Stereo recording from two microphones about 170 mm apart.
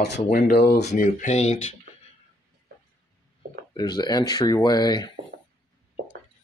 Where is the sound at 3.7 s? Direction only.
25° left (ahead or behind).